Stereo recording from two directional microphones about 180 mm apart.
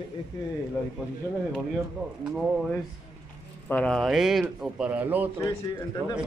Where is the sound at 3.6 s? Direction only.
5° left (ahead or behind).